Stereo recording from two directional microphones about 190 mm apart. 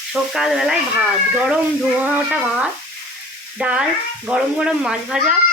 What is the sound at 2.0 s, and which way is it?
Speech, 5° right (ahead or behind).